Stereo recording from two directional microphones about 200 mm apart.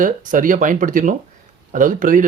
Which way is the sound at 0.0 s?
40° right (ahead or behind).